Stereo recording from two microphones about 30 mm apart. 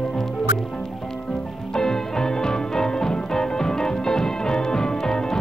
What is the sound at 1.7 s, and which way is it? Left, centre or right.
Music, left.